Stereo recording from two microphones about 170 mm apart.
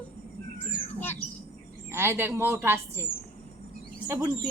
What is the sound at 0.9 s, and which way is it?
Squawk, 10° left (ahead or behind).